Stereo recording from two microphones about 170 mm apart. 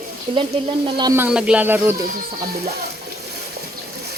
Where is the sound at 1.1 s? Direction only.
10° right (ahead or behind).